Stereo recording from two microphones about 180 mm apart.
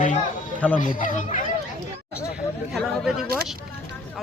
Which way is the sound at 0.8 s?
45° left (ahead or behind).